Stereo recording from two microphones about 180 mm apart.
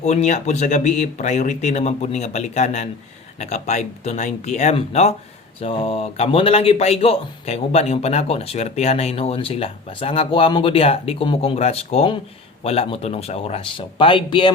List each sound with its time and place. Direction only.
0.0 s speech: 40° left (ahead or behind)